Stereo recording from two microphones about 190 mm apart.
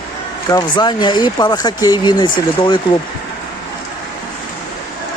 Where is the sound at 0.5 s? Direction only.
20° left (ahead or behind).